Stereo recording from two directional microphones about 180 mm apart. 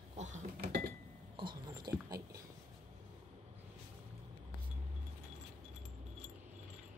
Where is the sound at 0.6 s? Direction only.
60° right (ahead or behind).